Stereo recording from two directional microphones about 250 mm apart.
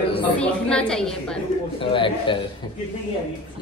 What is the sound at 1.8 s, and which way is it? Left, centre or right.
Speech, left.